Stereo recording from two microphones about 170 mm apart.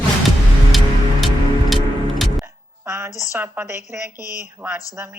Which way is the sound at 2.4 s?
15° right (ahead or behind).